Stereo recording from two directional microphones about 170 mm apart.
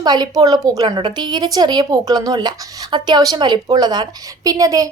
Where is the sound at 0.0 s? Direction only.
25° right (ahead or behind).